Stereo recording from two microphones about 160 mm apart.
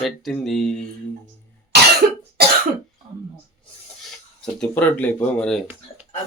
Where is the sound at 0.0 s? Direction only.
Centre (ahead or behind).